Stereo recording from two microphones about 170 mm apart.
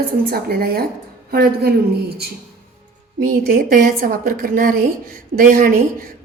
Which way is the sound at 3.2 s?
55° right (ahead or behind).